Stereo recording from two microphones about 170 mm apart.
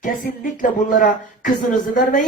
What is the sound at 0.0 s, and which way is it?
Speech, 50° left (ahead or behind).